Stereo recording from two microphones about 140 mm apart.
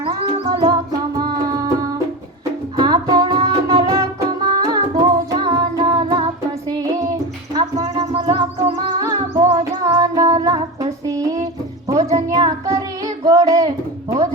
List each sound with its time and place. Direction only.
0.2 s music: 40° right (ahead or behind)
1.1 s music: 25° right (ahead or behind)
9.0 s music: 25° right (ahead or behind)
11.9 s child singing: 25° right (ahead or behind)